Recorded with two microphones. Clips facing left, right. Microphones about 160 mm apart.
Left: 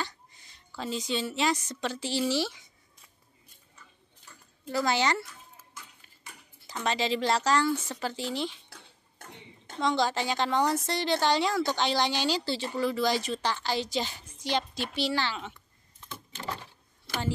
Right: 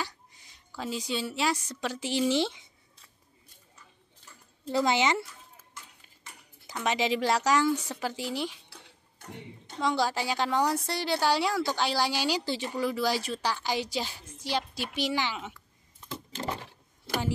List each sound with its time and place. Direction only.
0.0 s a woman's voice: 10° right (ahead or behind)
4.6 s speech: 20° right (ahead or behind)
6.7 s a woman's voice: 15° right (ahead or behind)
9.8 s a woman's voice: 5° right (ahead or behind)